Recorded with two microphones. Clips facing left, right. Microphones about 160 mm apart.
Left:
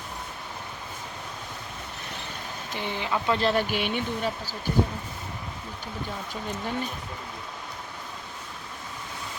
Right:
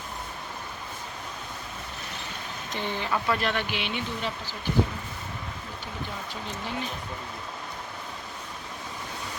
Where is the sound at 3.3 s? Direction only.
35° left (ahead or behind).